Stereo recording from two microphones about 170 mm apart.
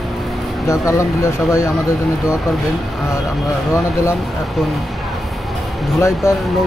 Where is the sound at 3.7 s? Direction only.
15° left (ahead or behind).